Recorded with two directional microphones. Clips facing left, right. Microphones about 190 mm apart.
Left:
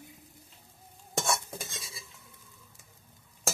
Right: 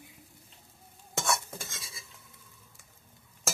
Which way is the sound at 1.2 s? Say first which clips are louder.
Right 1 dB; 15° left (ahead or behind).